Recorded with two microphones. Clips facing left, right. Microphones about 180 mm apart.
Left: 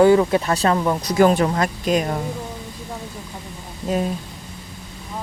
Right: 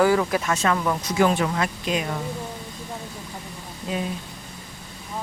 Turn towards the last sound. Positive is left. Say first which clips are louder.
# left 6 dB
turn(degrees=40)  # may be behind; listen again after turning